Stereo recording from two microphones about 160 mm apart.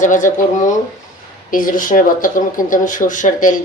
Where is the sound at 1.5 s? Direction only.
55° left (ahead or behind).